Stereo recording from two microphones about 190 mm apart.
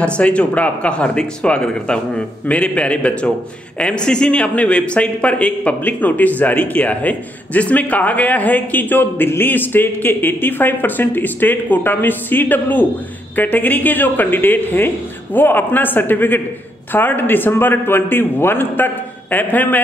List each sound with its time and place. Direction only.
0.0 s a man's voice: 5° left (ahead or behind)